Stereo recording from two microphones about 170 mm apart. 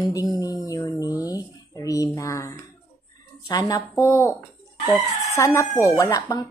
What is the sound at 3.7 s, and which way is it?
Speech, 15° left (ahead or behind).